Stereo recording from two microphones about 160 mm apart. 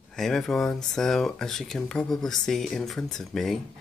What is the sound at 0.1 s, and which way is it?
Speech, 5° left (ahead or behind).